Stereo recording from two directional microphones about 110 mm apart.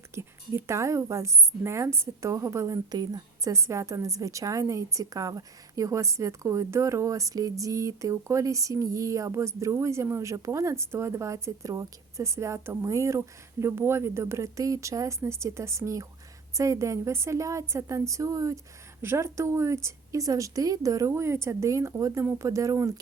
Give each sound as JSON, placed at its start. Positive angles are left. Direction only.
{"t": 0.1, "sound": "a woman's voice", "side_deg": -25}